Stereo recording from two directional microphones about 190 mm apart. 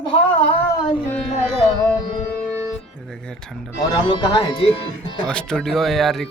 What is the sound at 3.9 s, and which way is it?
Speech, 25° left (ahead or behind).